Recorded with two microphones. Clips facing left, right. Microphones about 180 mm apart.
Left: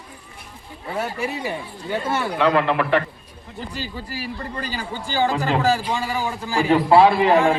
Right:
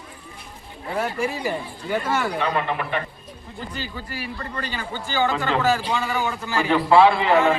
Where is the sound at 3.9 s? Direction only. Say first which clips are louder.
Left 2 dB; 35° left (ahead or behind).